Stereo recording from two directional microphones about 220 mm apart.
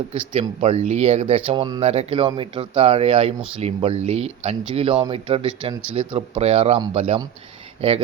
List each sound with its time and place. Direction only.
0.1 s speech: 25° right (ahead or behind)